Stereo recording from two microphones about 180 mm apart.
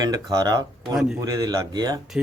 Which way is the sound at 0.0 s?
20° right (ahead or behind).